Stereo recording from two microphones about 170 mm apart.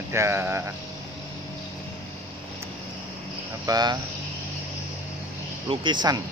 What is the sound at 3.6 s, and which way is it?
Speech, 25° right (ahead or behind).